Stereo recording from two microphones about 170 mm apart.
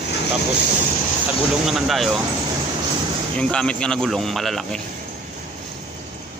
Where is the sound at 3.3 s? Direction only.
5° left (ahead or behind).